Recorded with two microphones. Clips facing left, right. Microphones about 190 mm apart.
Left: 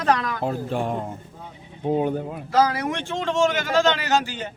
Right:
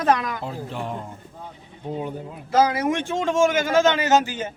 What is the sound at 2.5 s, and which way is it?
Speech, 20° right (ahead or behind).